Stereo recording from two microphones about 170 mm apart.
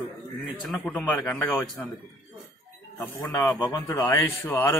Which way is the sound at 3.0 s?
15° left (ahead or behind).